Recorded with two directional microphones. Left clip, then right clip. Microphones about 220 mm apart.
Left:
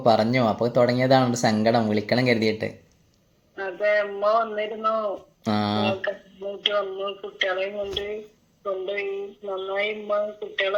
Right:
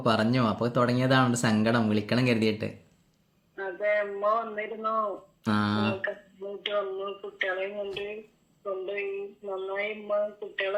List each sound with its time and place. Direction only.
0.0 s speech: 15° right (ahead or behind)
3.5 s a man's voice: 30° left (ahead or behind)
5.4 s a sound: 15° right (ahead or behind)
6.1 s speech: 35° left (ahead or behind)